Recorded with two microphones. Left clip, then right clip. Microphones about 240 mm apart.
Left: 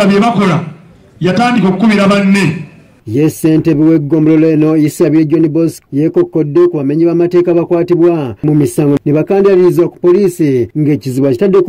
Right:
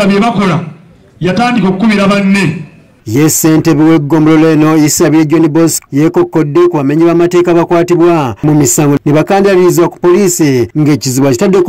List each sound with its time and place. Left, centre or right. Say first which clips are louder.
0.0 s a man's voice: even; centre
3.1 s a man's voice: right 2 dB; centre